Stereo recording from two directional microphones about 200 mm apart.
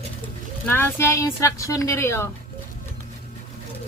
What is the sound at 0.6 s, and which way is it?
Speech, 10° left (ahead or behind).